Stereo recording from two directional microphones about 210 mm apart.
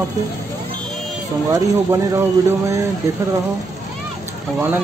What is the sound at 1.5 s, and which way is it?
Speech, 15° right (ahead or behind).